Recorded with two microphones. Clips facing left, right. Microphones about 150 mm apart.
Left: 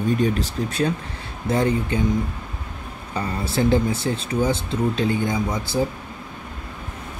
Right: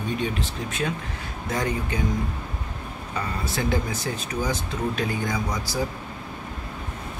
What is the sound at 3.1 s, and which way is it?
Speech, 30° left (ahead or behind).